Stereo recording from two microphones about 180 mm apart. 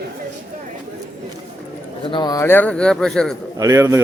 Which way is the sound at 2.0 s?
25° left (ahead or behind).